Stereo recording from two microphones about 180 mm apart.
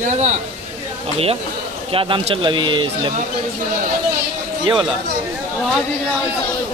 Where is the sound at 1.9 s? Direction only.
30° right (ahead or behind).